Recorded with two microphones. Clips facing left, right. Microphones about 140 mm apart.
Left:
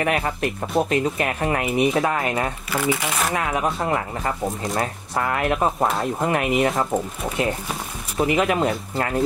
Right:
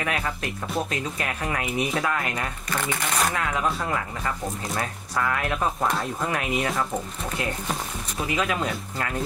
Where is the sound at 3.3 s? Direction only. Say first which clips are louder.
Left 3 dB; 25° left (ahead or behind).